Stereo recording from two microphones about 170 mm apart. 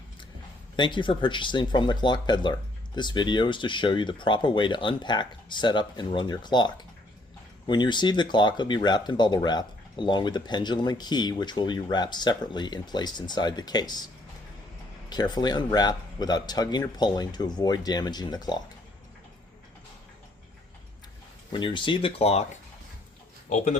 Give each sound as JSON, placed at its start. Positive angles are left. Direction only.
{"t": 0.8, "sound": "speech", "side_deg": 30}
{"t": 7.7, "sound": "speech", "side_deg": 25}
{"t": 15.1, "sound": "speech", "side_deg": 25}
{"t": 21.5, "sound": "speech", "side_deg": 30}
{"t": 23.5, "sound": "speech", "side_deg": 45}